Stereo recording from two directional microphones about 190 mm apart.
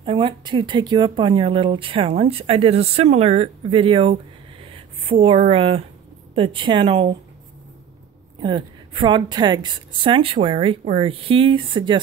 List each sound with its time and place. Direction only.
0.0 s speech: 25° right (ahead or behind)
8.4 s speech: 25° right (ahead or behind)